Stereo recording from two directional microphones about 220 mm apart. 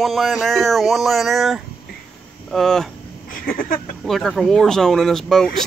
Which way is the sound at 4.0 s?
Centre (ahead or behind).